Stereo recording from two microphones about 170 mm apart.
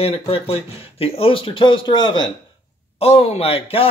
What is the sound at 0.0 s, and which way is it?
Speech, 35° left (ahead or behind).